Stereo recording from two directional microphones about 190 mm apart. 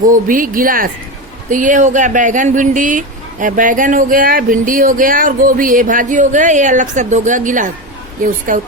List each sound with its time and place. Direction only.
0.0 s speech: 45° right (ahead or behind)